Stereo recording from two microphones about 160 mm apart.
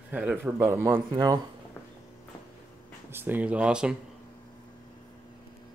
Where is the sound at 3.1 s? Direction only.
10° right (ahead or behind).